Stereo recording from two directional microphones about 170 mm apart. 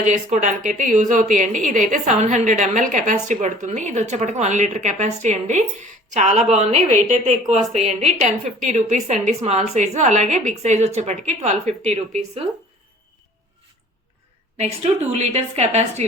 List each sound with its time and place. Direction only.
0.0 s a woman's voice: 45° right (ahead or behind)
14.6 s a woman's voice: 40° right (ahead or behind)